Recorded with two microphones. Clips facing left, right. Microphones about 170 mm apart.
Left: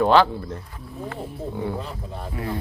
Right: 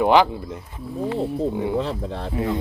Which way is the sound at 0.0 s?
15° right (ahead or behind).